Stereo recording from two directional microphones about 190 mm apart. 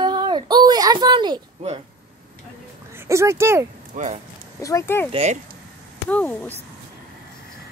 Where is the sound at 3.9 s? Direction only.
40° right (ahead or behind).